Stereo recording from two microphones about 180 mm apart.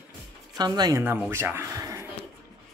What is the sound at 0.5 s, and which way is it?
Speech, 20° right (ahead or behind).